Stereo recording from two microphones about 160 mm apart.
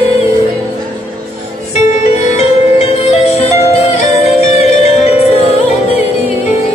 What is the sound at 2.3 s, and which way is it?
Music, 40° left (ahead or behind).